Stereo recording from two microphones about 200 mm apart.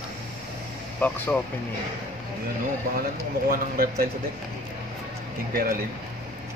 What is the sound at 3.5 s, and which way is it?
Speech, 50° right (ahead or behind).